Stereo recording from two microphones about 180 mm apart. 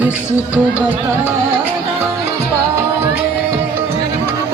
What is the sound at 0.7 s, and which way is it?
Music, 10° right (ahead or behind).